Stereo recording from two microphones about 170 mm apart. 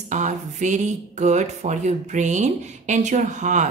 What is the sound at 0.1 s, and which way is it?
Speech, 45° right (ahead or behind).